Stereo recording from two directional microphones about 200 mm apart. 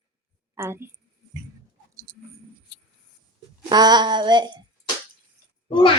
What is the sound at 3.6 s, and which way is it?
Female singing, 20° right (ahead or behind).